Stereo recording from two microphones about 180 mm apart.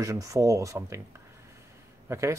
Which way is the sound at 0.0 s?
15° right (ahead or behind).